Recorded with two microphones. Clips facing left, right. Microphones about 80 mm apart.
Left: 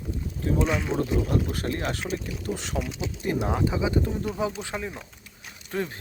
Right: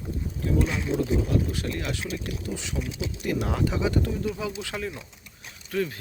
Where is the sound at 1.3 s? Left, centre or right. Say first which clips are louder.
Left 1 dB; left.